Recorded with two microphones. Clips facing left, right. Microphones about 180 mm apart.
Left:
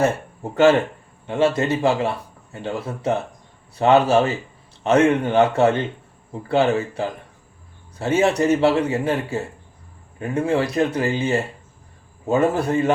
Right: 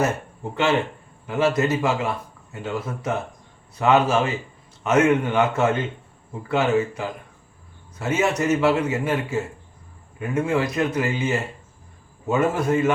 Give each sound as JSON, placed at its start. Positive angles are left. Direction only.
{"t": 0.5, "sound": "speech", "side_deg": 45}
{"t": 1.3, "sound": "speech", "side_deg": 30}